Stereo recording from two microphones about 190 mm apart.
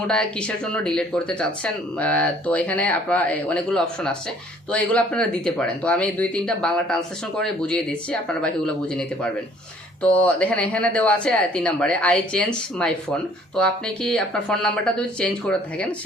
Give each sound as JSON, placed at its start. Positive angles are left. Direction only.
{"t": 0.1, "sound": "speech", "side_deg": 5}